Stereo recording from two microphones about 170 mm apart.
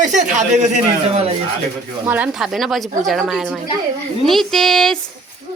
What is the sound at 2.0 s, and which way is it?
Speech, 10° right (ahead or behind).